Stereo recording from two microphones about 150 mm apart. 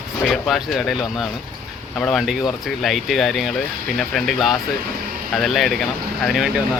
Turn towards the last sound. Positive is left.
turn(degrees=0)  # may be behind; listen again after turning